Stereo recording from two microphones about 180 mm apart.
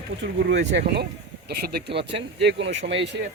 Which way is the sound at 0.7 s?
75° right (ahead or behind).